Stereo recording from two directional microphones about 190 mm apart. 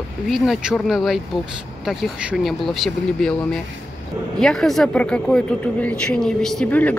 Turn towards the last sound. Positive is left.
turn(degrees=10)  # may be behind; listen again after turning